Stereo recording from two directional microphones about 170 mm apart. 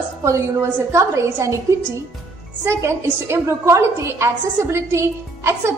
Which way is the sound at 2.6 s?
15° right (ahead or behind).